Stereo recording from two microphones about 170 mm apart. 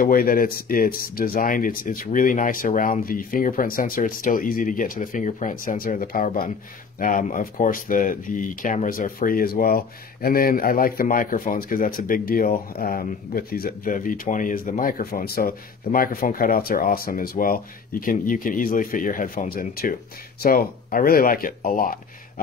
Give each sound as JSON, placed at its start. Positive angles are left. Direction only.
{"t": 0.0, "sound": "speech", "side_deg": 55}